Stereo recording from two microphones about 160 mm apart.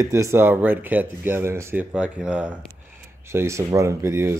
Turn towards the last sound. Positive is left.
turn(degrees=-15)  # may be behind; listen again after turning